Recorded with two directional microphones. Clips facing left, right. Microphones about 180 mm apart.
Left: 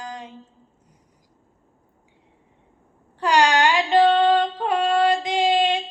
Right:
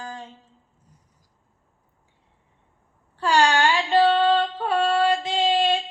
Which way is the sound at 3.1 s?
15° left (ahead or behind).